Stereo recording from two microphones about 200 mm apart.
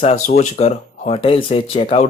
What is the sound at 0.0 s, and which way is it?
Speech, 35° left (ahead or behind).